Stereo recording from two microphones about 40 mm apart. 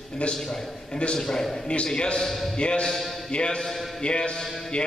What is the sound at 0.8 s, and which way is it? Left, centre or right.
Speech, left.